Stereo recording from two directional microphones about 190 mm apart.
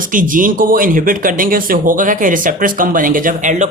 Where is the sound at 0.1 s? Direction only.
45° right (ahead or behind).